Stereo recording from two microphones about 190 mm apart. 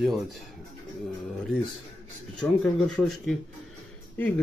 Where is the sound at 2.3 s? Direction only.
5° left (ahead or behind).